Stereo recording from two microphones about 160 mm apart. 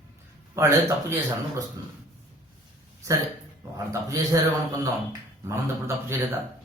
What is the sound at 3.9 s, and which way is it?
A man's voice, 20° right (ahead or behind).